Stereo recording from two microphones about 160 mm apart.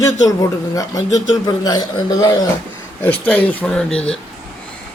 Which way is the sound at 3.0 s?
10° left (ahead or behind).